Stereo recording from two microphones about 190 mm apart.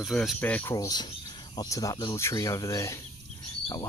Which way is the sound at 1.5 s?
15° left (ahead or behind).